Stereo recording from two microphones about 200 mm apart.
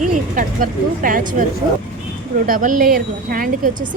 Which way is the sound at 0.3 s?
45° right (ahead or behind).